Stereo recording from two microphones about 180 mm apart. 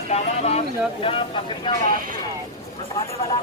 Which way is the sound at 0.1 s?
35° left (ahead or behind).